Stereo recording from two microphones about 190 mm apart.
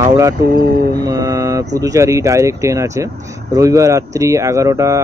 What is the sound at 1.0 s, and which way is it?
Speech, 20° right (ahead or behind).